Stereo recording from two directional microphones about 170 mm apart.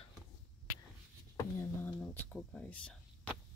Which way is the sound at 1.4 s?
15° left (ahead or behind).